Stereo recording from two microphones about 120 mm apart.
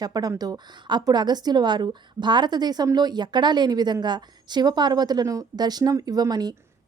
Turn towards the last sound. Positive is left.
turn(degrees=-35)  # may be behind; listen again after turning